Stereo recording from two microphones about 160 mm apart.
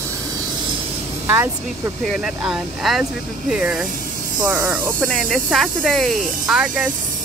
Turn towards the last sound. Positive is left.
turn(degrees=-5)  # may be behind; listen again after turning